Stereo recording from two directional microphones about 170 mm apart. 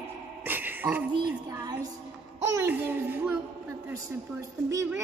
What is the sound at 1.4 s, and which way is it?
A woman's voice, 20° right (ahead or behind).